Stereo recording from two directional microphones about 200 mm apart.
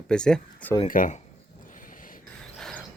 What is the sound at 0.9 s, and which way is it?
Speech, 40° left (ahead or behind).